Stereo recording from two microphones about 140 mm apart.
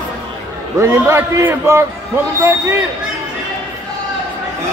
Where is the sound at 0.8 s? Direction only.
20° right (ahead or behind).